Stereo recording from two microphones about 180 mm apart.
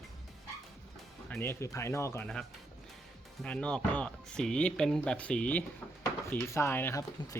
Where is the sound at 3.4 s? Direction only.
5° left (ahead or behind).